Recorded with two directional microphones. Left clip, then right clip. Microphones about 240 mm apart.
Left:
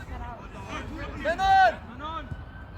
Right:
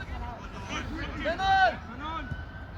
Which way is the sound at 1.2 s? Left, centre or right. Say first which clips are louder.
Left 4 dB; left.